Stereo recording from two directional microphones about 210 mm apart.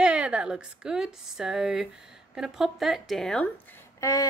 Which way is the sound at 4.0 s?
15° left (ahead or behind).